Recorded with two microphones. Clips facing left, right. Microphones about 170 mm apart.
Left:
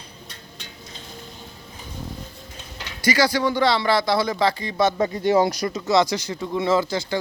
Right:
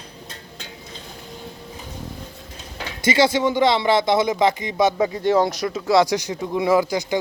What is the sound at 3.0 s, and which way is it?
Speech, 25° right (ahead or behind).